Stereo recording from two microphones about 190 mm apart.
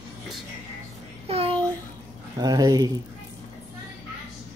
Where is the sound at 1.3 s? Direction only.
30° right (ahead or behind).